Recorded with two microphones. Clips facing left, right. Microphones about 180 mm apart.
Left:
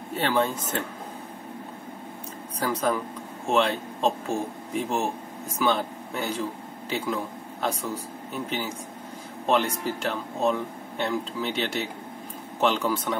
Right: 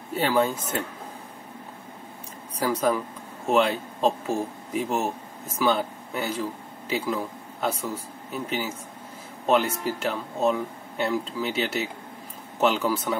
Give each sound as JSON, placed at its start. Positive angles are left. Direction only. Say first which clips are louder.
{"t": 0.1, "sound": "speech", "louder": "right 2 dB", "side_deg": -5}
{"t": 2.6, "sound": "speech", "louder": "right 2 dB", "side_deg": -10}
{"t": 7.6, "sound": "speech", "louder": "right 1 dB", "side_deg": 0}